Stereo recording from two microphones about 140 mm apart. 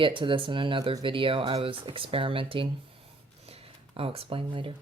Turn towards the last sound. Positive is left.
turn(degrees=-40)  # may be behind; listen again after turning